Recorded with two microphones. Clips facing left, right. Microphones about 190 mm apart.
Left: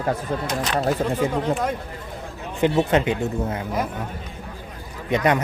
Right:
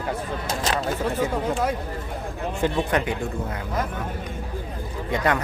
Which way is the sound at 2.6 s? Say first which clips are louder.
Left 5 dB; 20° left (ahead or behind).